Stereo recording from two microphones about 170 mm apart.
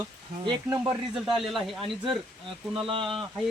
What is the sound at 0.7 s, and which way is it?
Speech, 15° right (ahead or behind).